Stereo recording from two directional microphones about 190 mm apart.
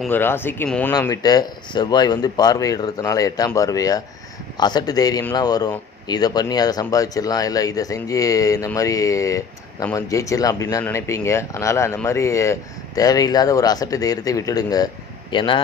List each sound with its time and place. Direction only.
0.1 s speech: 10° left (ahead or behind)